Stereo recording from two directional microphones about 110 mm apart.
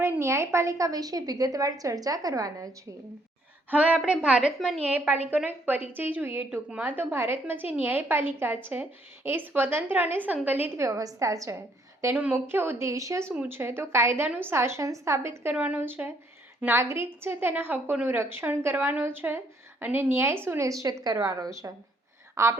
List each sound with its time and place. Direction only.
0.0 s a woman's voice: 25° right (ahead or behind)
3.7 s a woman's voice: 10° right (ahead or behind); by 11.5 s 30° right (ahead or behind)
12.1 s a woman's voice: 15° right (ahead or behind)
15.5 s a woman's voice: 15° right (ahead or behind)